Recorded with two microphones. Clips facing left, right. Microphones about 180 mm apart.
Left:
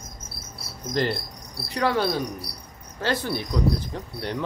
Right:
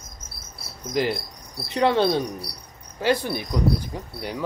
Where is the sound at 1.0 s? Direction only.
10° right (ahead or behind).